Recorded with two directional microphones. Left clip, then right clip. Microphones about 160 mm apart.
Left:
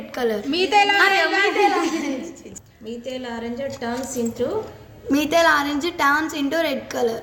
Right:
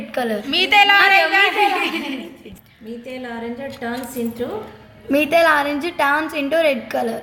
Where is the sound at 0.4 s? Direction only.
45° left (ahead or behind).